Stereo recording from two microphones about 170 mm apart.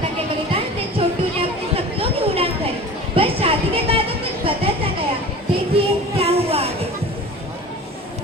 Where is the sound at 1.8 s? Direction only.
35° right (ahead or behind).